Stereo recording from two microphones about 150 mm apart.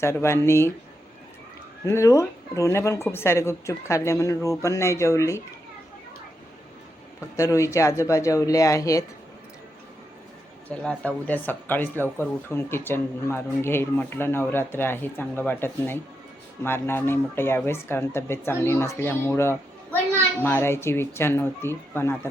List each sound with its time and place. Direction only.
0.0 s speech: 15° left (ahead or behind)
1.9 s speech: 20° left (ahead or behind)
7.3 s speech: 20° left (ahead or behind)
10.7 s speech: 10° left (ahead or behind)